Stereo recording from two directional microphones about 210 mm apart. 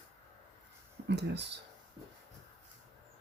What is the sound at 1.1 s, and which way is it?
Speech, 55° right (ahead or behind).